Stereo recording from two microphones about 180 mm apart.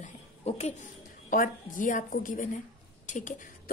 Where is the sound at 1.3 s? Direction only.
50° left (ahead or behind).